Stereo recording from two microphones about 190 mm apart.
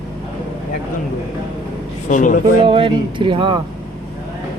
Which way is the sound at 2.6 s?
25° right (ahead or behind).